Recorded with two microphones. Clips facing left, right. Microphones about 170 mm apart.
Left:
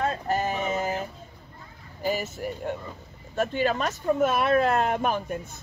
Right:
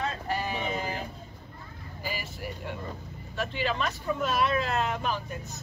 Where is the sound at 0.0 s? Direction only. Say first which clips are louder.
Left 5 dB; 45° left (ahead or behind).